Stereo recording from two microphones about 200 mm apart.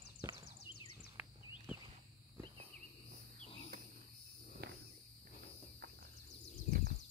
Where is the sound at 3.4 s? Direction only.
30° left (ahead or behind).